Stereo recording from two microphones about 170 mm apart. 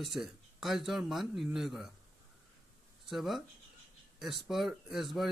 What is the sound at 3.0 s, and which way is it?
Speech, centre (ahead or behind).